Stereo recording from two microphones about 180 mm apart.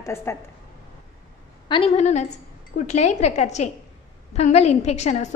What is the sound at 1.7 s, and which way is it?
A woman's voice, 35° left (ahead or behind).